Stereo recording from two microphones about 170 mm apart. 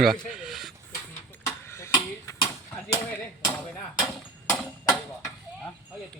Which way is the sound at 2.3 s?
30° left (ahead or behind).